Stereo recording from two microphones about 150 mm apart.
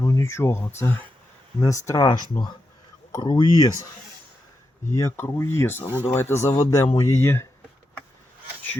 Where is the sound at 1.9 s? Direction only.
25° left (ahead or behind).